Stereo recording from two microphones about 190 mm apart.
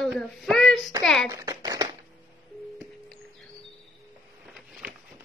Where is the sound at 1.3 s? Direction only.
20° right (ahead or behind).